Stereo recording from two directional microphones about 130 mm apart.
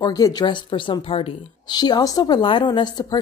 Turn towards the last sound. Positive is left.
turn(degrees=35)  # may be behind; listen again after turning